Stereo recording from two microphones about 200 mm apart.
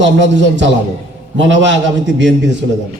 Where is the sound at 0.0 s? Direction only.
65° right (ahead or behind).